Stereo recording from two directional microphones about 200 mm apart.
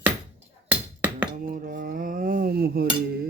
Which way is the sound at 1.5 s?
45° right (ahead or behind).